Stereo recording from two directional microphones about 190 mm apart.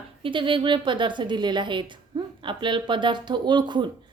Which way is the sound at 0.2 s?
25° right (ahead or behind).